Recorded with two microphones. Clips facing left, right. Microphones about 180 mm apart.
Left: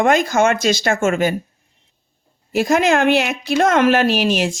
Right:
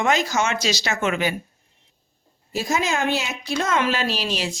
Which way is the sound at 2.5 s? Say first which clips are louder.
Left 8 dB; 60° left (ahead or behind).